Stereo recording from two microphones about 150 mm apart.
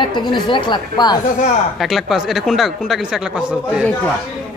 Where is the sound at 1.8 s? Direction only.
Centre (ahead or behind).